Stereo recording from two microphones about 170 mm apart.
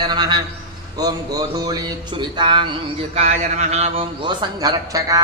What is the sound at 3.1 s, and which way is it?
A man's voice, 40° right (ahead or behind).